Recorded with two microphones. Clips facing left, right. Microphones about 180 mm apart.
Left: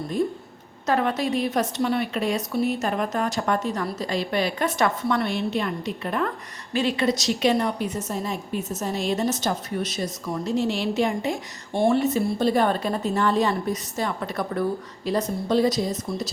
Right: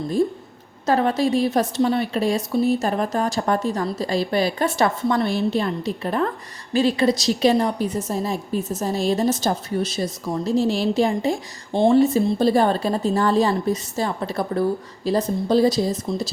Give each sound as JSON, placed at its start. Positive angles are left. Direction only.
{"t": 0.9, "sound": "a woman's voice", "side_deg": -30}